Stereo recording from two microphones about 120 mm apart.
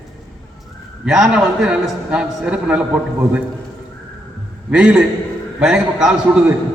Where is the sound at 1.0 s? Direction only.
5° right (ahead or behind).